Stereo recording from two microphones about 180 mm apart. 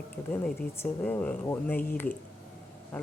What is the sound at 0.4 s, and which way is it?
Speech, 10° left (ahead or behind).